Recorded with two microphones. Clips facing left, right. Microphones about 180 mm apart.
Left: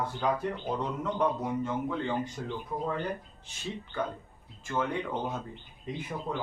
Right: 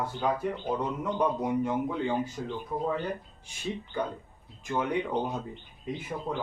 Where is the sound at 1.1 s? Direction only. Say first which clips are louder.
Right 3 dB; 15° right (ahead or behind).